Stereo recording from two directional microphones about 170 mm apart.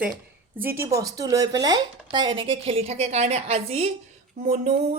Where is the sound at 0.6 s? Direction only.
15° right (ahead or behind).